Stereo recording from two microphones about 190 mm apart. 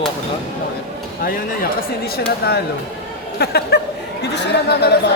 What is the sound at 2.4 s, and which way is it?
Speech, 55° left (ahead or behind).